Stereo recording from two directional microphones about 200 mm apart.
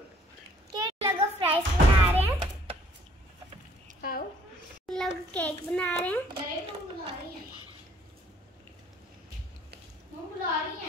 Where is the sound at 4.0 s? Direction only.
45° left (ahead or behind).